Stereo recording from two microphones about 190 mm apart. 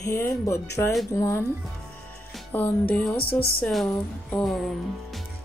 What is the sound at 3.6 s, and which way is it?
Music, centre (ahead or behind).